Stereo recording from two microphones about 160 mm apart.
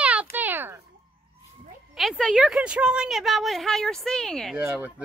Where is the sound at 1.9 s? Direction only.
Centre (ahead or behind).